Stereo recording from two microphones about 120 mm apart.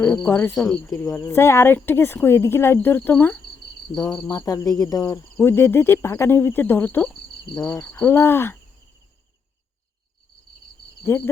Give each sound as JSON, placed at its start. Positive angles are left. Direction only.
{"t": 0.3, "sound": "speech", "side_deg": 15}
{"t": 0.5, "sound": "speech", "side_deg": 5}
{"t": 0.9, "sound": "speech", "side_deg": 25}
{"t": 4.3, "sound": "speech", "side_deg": 30}
{"t": 5.4, "sound": "speech", "side_deg": 20}